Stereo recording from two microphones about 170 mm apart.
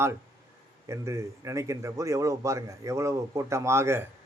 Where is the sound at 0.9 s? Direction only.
15° right (ahead or behind).